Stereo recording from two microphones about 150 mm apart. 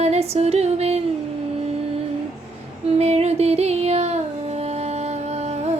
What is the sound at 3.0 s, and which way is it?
Music, 45° right (ahead or behind).